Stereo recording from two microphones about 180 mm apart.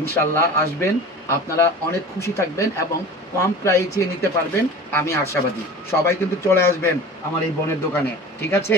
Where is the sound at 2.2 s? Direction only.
15° left (ahead or behind).